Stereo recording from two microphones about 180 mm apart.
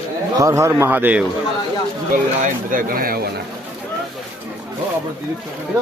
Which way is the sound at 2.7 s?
50° right (ahead or behind).